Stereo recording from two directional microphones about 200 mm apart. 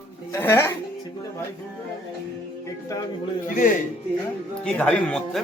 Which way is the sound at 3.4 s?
45° left (ahead or behind).